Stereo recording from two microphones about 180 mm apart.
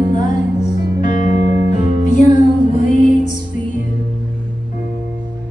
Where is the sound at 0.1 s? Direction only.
40° left (ahead or behind).